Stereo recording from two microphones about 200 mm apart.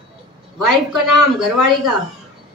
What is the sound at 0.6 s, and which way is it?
A woman's voice, centre (ahead or behind).